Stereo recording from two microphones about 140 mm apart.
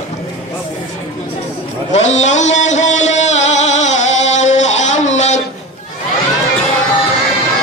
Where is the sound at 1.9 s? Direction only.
55° left (ahead or behind).